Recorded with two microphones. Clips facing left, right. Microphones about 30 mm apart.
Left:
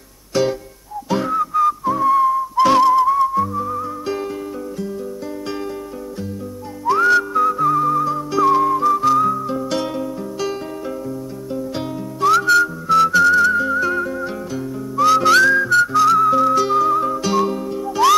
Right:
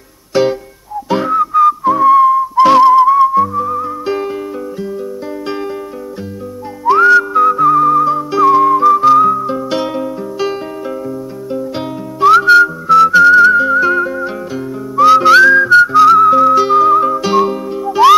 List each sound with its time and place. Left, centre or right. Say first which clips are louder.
0.3 s music: right 6 dB; right
1.0 s whistling: right 6 dB; centre
6.9 s whistling: right 7 dB; right
12.2 s whistling: right 7 dB; right